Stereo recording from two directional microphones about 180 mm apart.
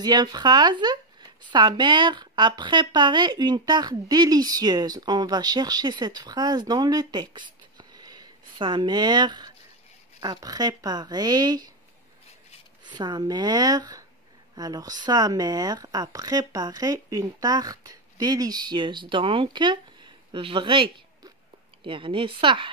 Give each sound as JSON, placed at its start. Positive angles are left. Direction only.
{"t": 0.0, "sound": "speech", "side_deg": -25}
{"t": 12.8, "sound": "speech", "side_deg": -25}